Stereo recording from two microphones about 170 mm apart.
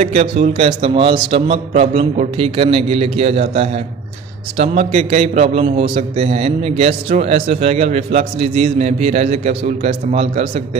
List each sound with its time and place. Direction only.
0.0 s a man's voice: 40° right (ahead or behind)